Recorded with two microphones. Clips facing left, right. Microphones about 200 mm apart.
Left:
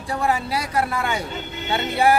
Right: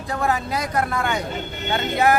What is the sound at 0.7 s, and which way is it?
Speech, 10° left (ahead or behind).